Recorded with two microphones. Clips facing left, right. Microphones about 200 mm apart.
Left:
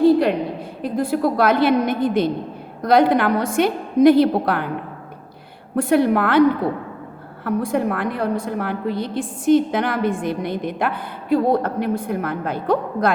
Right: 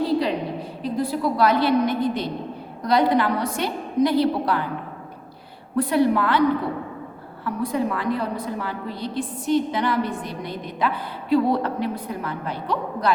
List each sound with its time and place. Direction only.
0.0 s a sound: 55° left (ahead or behind)
0.8 s a woman's voice: 50° left (ahead or behind)
5.7 s a woman's voice: 55° left (ahead or behind)
7.4 s a woman's voice: 55° left (ahead or behind)